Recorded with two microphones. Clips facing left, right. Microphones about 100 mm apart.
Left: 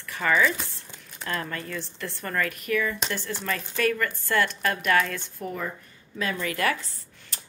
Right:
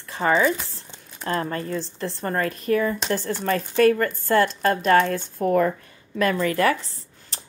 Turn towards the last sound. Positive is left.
turn(degrees=-40)  # may be behind; listen again after turning